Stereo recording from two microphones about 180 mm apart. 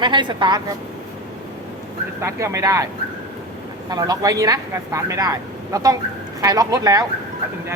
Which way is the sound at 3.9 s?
20° right (ahead or behind).